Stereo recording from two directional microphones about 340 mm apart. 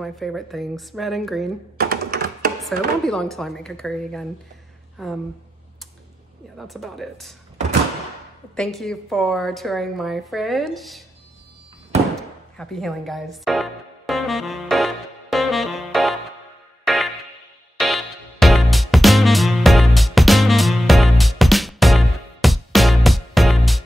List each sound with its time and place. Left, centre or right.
0.0 s a woman's voice: centre
1.8 s typing: right
2.6 s a woman's voice: centre
6.7 s a woman's voice: centre
8.5 s a woman's voice: centre
12.2 s music: centre